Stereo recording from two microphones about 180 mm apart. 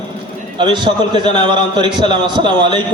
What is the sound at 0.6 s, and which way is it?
A man's voice, 25° right (ahead or behind).